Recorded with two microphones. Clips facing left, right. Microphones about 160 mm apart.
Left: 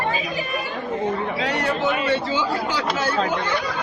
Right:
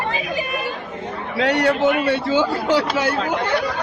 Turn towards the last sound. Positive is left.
turn(degrees=-65)  # may be behind; listen again after turning